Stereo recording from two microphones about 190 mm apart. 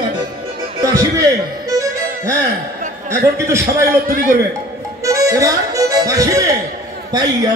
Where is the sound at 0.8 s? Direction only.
15° right (ahead or behind).